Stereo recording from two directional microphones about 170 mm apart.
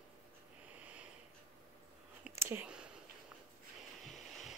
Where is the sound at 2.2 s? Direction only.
15° right (ahead or behind).